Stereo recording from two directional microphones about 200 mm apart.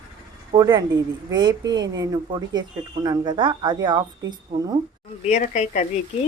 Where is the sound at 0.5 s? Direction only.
20° right (ahead or behind).